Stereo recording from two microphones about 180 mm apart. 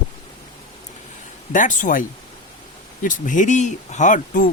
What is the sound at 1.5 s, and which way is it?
Speech, 45° left (ahead or behind).